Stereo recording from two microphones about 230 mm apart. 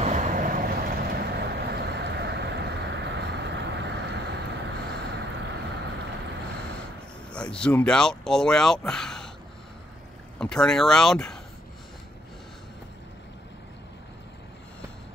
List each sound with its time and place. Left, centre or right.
0.0 s vehicle: right
7.3 s speech: centre
10.4 s speech: centre